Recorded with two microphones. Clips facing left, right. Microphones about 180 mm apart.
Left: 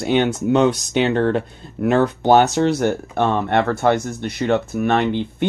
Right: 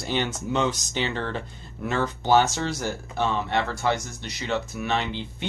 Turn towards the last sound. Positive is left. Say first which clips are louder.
# left 9 dB
turn(degrees=55)  # may be behind; listen again after turning